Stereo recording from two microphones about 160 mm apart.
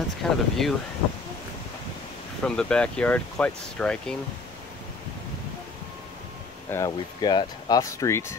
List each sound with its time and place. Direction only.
0.2 s speech: centre (ahead or behind)
2.4 s speech: 5° left (ahead or behind)
6.7 s speech: 25° left (ahead or behind)